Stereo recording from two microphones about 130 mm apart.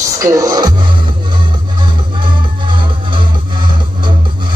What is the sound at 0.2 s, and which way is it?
Music, 25° right (ahead or behind).